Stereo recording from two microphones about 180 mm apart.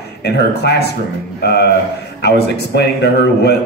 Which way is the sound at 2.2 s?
65° left (ahead or behind).